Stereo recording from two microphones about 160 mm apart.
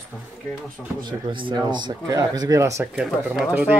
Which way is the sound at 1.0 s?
30° right (ahead or behind).